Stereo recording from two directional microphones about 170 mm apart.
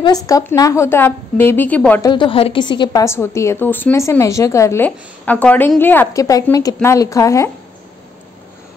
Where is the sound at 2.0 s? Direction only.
30° left (ahead or behind).